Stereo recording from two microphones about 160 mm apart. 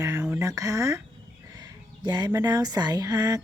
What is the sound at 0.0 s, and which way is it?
A woman's voice, 15° right (ahead or behind).